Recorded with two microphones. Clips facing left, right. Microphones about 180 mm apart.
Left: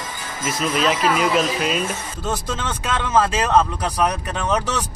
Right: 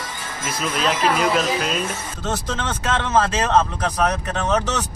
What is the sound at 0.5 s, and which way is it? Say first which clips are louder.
Speech: left 2 dB; centre (ahead or behind).